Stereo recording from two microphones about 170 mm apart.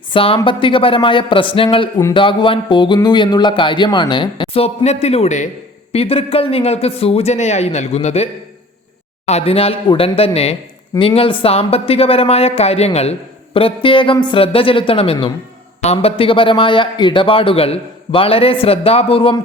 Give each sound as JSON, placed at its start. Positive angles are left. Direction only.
{"t": 0.1, "sound": "speech", "side_deg": 35}